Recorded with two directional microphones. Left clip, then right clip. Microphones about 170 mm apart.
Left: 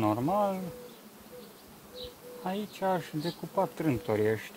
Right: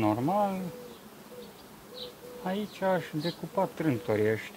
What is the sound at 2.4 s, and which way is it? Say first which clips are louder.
Speech: right 1 dB; 30° left (ahead or behind).